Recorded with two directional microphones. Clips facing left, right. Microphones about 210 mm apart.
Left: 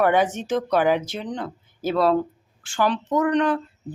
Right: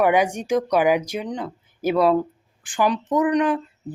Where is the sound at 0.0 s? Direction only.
10° right (ahead or behind).